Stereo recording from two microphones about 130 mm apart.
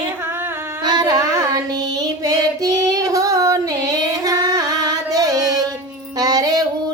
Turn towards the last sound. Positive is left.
turn(degrees=-30)  # may be behind; listen again after turning